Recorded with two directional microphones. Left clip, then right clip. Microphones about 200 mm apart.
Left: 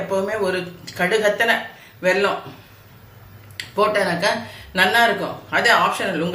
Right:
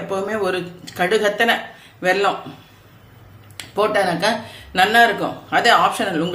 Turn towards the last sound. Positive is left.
turn(degrees=-55)  # may be behind; listen again after turning